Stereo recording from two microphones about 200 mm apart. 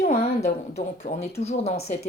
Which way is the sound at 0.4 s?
35° left (ahead or behind).